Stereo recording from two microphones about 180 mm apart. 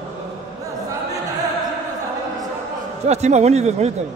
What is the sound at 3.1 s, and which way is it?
Speech, 40° right (ahead or behind).